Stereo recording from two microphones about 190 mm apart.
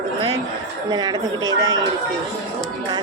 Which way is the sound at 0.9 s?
20° right (ahead or behind).